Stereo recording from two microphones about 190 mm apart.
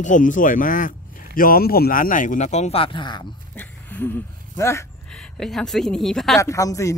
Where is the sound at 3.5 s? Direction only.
10° left (ahead or behind).